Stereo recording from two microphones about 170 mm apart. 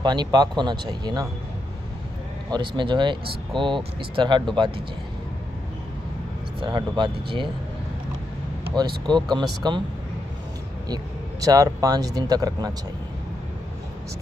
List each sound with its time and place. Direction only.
0.0 s speech: 25° right (ahead or behind)
2.5 s speech: 25° right (ahead or behind)
6.6 s speech: 30° right (ahead or behind)
9.0 s speech: 25° right (ahead or behind)
11.4 s speech: 20° right (ahead or behind)